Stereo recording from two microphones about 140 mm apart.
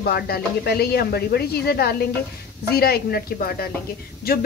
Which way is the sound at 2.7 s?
90° left.